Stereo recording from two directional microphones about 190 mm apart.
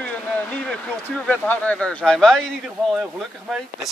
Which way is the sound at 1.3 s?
5° left (ahead or behind).